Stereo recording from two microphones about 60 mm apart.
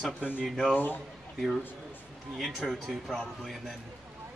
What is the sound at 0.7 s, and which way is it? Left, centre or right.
Speech, left.